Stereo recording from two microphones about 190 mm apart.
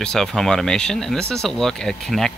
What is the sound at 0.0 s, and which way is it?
Speech, 5° left (ahead or behind).